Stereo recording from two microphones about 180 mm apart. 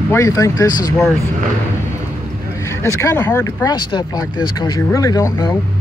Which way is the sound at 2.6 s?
15° left (ahead or behind).